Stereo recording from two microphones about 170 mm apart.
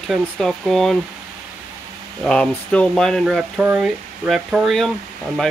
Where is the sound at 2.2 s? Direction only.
5° left (ahead or behind).